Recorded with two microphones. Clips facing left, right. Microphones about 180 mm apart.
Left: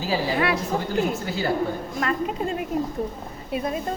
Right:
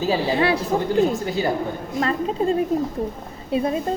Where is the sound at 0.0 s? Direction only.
25° right (ahead or behind).